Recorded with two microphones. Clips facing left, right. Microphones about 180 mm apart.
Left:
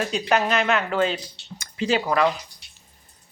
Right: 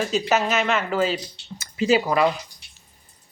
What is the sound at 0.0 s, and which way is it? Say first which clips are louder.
Speech: right 1 dB; centre (ahead or behind).